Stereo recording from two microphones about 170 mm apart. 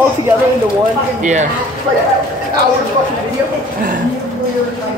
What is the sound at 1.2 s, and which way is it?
Speech, 45° right (ahead or behind).